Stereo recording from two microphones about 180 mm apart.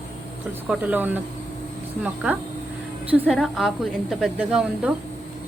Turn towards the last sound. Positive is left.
turn(degrees=-5)  # may be behind; listen again after turning